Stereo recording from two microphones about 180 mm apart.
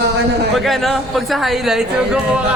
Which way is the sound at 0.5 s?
Centre (ahead or behind).